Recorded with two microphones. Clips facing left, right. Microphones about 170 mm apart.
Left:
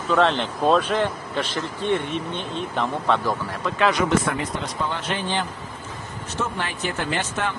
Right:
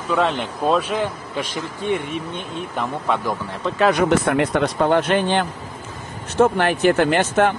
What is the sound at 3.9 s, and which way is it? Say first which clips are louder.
Speech: right 4 dB; 60° right (ahead or behind).